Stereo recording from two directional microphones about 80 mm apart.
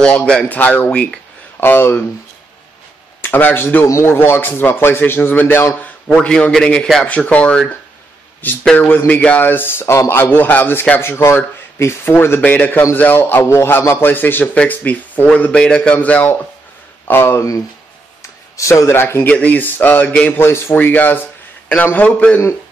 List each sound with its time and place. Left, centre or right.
0.0 s a man's voice: centre; by 2.0 s left
3.2 s speech: left
3.8 s a man's voice: left
6.0 s a man's voice: centre
17.1 s speech: left
18.6 s speech: left
19.2 s a man's voice: centre
20.4 s a man's voice: left